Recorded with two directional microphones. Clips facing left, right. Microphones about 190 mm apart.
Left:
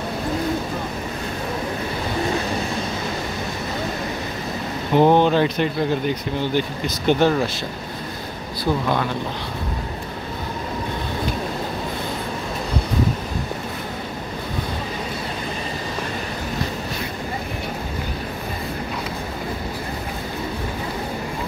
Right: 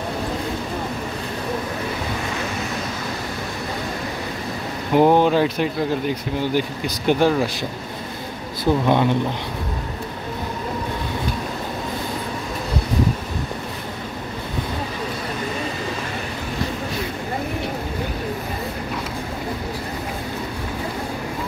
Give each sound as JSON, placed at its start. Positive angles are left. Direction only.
{"t": 4.9, "sound": "speech", "side_deg": -5}
{"t": 8.8, "sound": "speech", "side_deg": -20}